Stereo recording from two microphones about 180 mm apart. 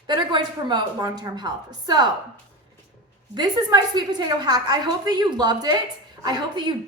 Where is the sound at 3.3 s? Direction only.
25° right (ahead or behind).